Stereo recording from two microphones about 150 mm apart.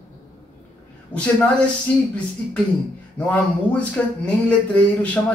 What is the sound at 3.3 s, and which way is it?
Speech, 10° left (ahead or behind).